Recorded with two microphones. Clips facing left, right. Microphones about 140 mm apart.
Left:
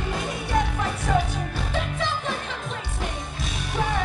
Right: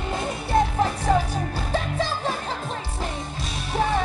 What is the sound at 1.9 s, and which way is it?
Music, 35° right (ahead or behind).